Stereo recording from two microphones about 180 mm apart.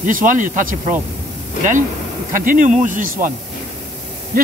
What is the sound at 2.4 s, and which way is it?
Speech, 45° right (ahead or behind).